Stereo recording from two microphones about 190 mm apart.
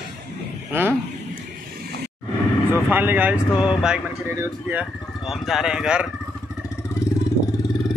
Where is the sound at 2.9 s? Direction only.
10° right (ahead or behind).